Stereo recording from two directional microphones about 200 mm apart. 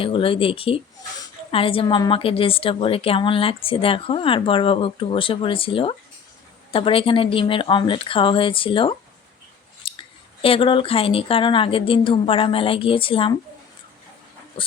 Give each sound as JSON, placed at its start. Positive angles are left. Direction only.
{"t": 0.0, "sound": "a woman's voice", "side_deg": 25}